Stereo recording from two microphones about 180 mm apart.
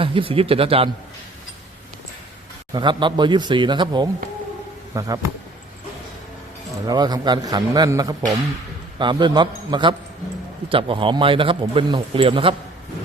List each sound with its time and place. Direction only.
0.0 s speech: 30° right (ahead or behind)
2.7 s a man's voice: 25° right (ahead or behind)
6.8 s a man's voice: 20° right (ahead or behind)